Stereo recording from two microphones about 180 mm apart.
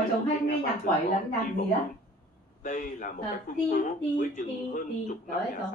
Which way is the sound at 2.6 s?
50° left (ahead or behind).